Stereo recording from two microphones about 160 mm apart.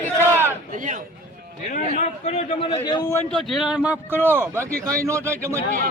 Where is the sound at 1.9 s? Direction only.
40° left (ahead or behind).